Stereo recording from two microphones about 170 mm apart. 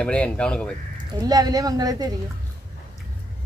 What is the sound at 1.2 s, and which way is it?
Speech, 20° right (ahead or behind).